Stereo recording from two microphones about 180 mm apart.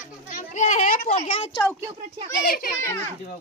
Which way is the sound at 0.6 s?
40° left (ahead or behind).